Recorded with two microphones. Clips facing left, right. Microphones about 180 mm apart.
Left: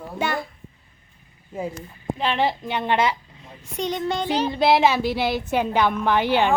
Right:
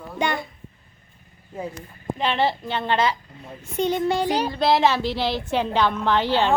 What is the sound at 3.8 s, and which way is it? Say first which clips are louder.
Music: right 3 dB; 5° right (ahead or behind).